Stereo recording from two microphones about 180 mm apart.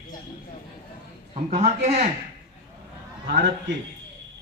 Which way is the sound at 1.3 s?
35° right (ahead or behind).